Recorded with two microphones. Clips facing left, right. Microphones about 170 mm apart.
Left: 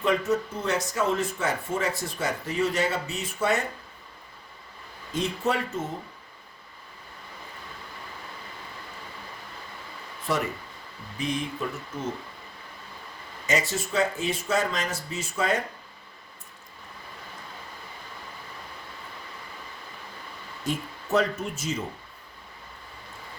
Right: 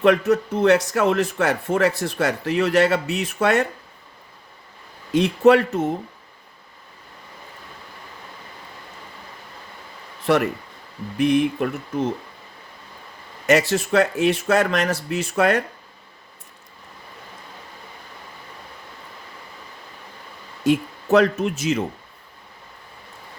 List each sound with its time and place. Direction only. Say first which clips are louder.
0.0 s speech: right 8 dB; 70° right (ahead or behind)
5.1 s speech: right 12 dB; 70° right (ahead or behind)
10.2 s speech: right 9 dB; 65° right (ahead or behind)
13.5 s speech: right 9 dB; 70° right (ahead or behind)
20.7 s speech: right 11 dB; 75° right (ahead or behind)